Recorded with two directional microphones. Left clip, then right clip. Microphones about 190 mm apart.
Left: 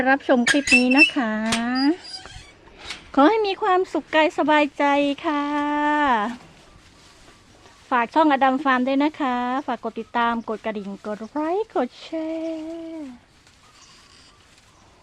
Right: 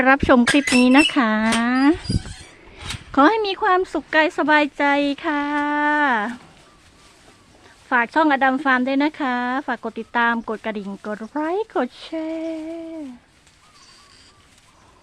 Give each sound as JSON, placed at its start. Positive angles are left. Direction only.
{"t": 0.0, "sound": "speech", "side_deg": -30}
{"t": 3.1, "sound": "speech", "side_deg": -10}
{"t": 7.9, "sound": "speech", "side_deg": -5}